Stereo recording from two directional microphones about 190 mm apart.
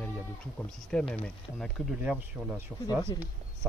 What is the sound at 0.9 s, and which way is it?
Speech, 5° left (ahead or behind).